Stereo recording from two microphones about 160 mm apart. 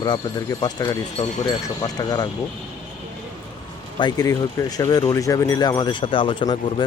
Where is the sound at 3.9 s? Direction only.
25° left (ahead or behind).